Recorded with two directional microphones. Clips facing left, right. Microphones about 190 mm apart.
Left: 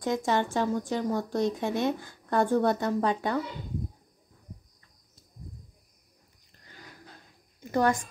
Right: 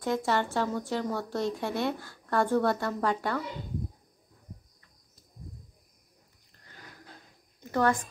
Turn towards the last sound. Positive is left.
turn(degrees=15)  # may be behind; listen again after turning